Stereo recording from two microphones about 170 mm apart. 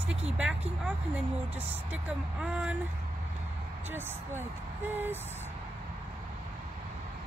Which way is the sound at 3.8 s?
15° right (ahead or behind).